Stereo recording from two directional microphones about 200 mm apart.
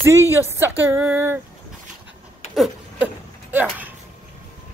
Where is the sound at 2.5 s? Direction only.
Centre (ahead or behind).